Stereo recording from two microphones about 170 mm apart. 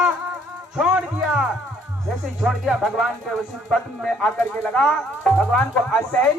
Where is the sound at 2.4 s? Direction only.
Centre (ahead or behind).